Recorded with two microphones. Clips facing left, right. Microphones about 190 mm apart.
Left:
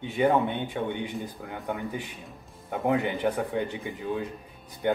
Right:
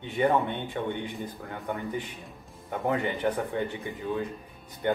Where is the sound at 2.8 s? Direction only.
15° left (ahead or behind).